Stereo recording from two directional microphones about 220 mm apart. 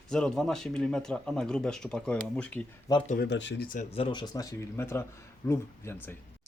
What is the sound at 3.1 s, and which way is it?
Speech, 45° left (ahead or behind).